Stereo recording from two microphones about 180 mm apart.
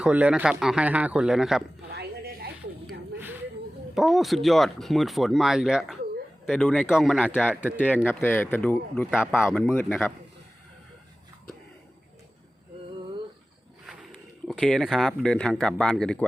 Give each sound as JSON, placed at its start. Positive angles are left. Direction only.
{"t": 0.0, "sound": "speech", "side_deg": -5}
{"t": 1.9, "sound": "a sound", "side_deg": -60}
{"t": 3.9, "sound": "speech", "side_deg": 0}
{"t": 7.6, "sound": "speech", "side_deg": 10}
{"t": 9.0, "sound": "speech", "side_deg": -5}
{"t": 9.6, "sound": "speech", "side_deg": 10}
{"t": 14.4, "sound": "speech", "side_deg": 0}